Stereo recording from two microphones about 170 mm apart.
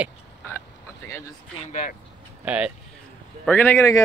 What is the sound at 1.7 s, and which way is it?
Speech, 50° left (ahead or behind).